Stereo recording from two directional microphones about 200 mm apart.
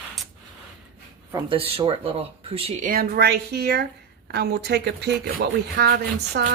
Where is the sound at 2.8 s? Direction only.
45° right (ahead or behind).